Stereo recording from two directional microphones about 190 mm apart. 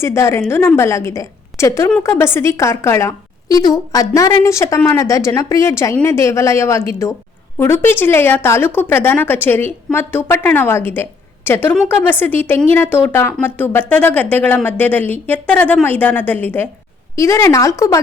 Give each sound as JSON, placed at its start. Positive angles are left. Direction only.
{"t": 0.0, "sound": "a woman's voice", "side_deg": 15}